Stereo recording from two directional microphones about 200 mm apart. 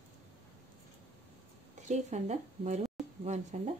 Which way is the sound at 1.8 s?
35° right (ahead or behind).